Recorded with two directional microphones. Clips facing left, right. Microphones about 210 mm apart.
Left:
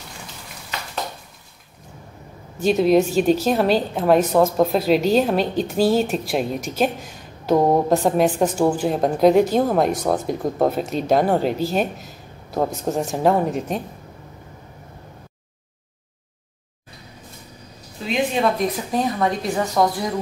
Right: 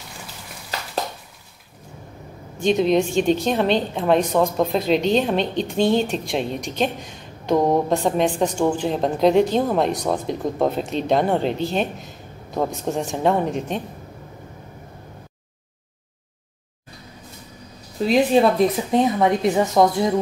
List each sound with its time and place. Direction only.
2.6 s a woman's voice: 5° left (ahead or behind)
18.0 s speech: 35° right (ahead or behind)